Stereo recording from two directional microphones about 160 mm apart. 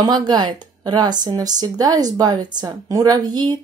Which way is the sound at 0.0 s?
25° right (ahead or behind).